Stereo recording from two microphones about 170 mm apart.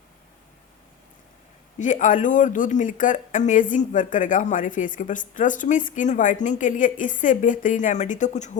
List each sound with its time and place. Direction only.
1.8 s speech: 50° left (ahead or behind)